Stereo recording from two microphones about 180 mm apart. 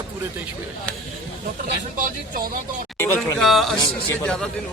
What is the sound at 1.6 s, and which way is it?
Speech, 45° right (ahead or behind).